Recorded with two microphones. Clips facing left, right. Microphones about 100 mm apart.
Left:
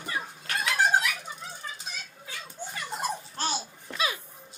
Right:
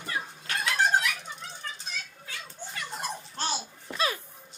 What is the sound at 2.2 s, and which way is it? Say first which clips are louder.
Children playing: left 2 dB; 10° left (ahead or behind).